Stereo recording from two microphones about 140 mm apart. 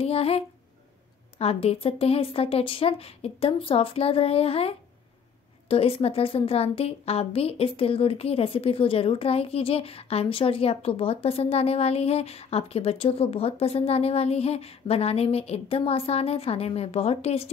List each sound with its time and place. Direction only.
0.0 s a woman's voice: 45° left (ahead or behind)